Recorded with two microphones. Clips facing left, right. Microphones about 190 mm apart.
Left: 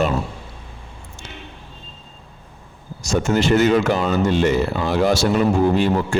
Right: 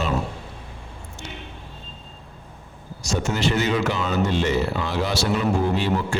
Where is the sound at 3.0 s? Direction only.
50° left (ahead or behind).